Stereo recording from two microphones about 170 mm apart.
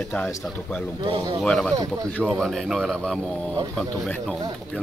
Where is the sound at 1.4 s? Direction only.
5° left (ahead or behind).